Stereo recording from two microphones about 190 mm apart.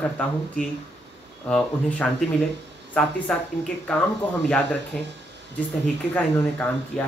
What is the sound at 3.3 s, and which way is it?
Speech, 5° left (ahead or behind).